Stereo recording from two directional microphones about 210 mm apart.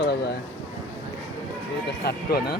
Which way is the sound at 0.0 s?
50° left (ahead or behind).